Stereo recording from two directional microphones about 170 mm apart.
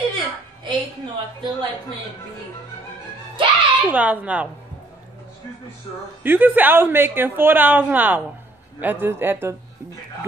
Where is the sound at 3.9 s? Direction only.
10° right (ahead or behind).